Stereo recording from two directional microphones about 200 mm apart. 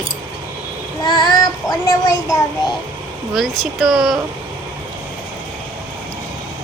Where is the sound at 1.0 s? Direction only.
20° left (ahead or behind).